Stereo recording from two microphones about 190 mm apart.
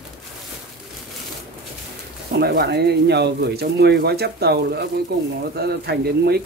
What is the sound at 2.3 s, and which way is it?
Speech, 55° right (ahead or behind).